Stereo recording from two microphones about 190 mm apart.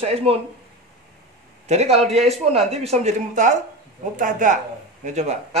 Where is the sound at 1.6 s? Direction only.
35° right (ahead or behind).